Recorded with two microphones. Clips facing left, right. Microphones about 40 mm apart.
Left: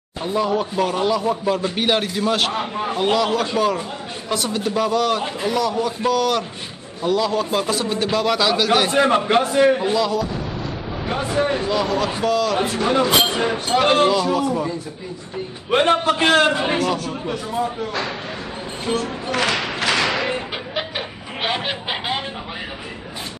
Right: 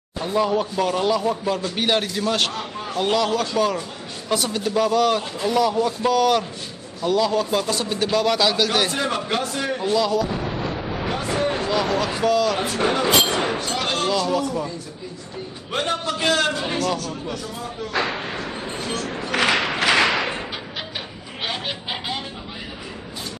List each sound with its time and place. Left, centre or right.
0.2 s a man's voice: centre
2.5 s a man's voice: left
3.3 s a man's voice: centre
8.9 s a man's voice: left
9.9 s speech: centre
10.3 s artillery fire: centre
11.5 s speech: centre
13.6 s a man's voice: left
14.1 s a man's voice: centre
15.7 s a man's voice: left
18.9 s a man's voice: centre
19.3 s a sound: centre
21.4 s a sound: left